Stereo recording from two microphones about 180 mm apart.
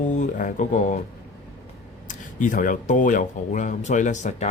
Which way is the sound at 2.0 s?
45° left (ahead or behind).